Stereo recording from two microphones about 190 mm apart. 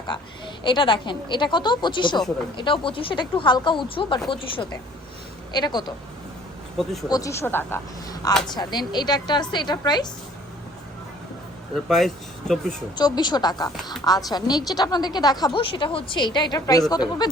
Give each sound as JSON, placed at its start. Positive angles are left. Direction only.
{"t": 0.1, "sound": "a woman's voice", "side_deg": 25}
{"t": 7.1, "sound": "a woman's voice", "side_deg": 15}
{"t": 11.7, "sound": "speech", "side_deg": 0}
{"t": 13.0, "sound": "a woman's voice", "side_deg": 20}